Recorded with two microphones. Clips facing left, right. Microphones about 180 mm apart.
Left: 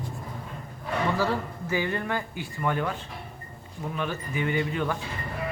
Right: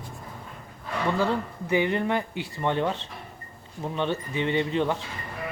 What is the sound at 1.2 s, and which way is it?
Speech, 20° right (ahead or behind).